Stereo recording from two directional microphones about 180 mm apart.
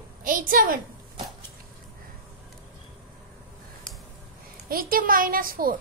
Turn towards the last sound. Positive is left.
turn(degrees=-50)  # may be behind; listen again after turning